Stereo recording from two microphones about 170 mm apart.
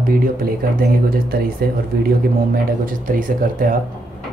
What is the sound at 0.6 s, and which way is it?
Speech, 60° right (ahead or behind).